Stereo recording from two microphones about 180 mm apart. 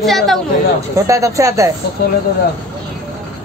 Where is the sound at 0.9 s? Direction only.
15° right (ahead or behind).